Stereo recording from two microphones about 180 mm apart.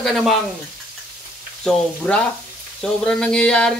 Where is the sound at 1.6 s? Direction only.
5° left (ahead or behind).